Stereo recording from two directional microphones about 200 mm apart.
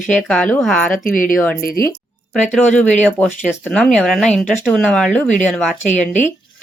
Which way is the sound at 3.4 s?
5° right (ahead or behind).